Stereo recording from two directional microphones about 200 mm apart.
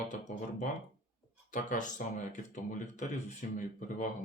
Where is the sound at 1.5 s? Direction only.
40° left (ahead or behind).